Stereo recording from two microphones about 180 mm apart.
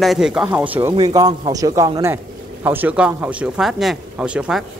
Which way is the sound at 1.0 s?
20° right (ahead or behind).